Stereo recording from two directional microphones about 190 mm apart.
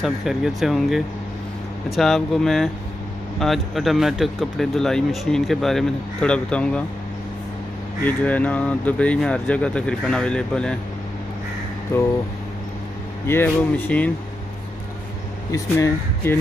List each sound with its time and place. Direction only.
0.0 s speech: centre (ahead or behind)
8.0 s speech: 10° left (ahead or behind)
13.3 s speech: 10° left (ahead or behind)
15.5 s speech: 15° left (ahead or behind)